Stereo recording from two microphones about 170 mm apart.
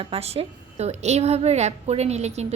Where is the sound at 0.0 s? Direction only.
35° right (ahead or behind).